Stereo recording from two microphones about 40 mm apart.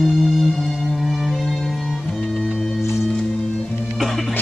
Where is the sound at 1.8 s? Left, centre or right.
Centre.